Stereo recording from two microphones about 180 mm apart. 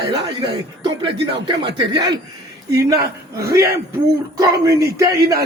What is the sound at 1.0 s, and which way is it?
Speech, 30° right (ahead or behind).